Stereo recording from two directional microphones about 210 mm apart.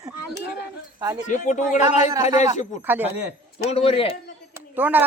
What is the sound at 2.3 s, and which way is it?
Speech, 20° right (ahead or behind).